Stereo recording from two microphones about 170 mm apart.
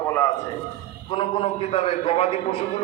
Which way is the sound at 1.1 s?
30° left (ahead or behind).